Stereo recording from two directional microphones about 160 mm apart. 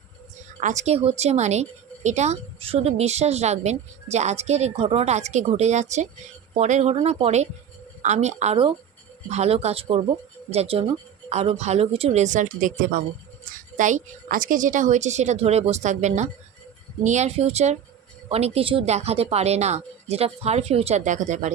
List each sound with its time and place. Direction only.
0.6 s a woman's voice: 50° right (ahead or behind)